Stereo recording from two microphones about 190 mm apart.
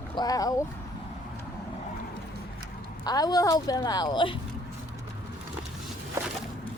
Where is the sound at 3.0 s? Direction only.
20° left (ahead or behind).